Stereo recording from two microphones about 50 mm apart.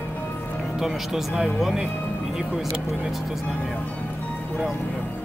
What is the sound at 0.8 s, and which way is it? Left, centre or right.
Speech, centre.